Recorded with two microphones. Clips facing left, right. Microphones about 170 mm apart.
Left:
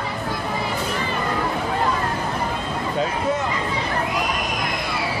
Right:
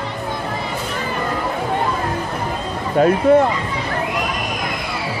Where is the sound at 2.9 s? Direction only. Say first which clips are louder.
Right 12 dB; 55° right (ahead or behind).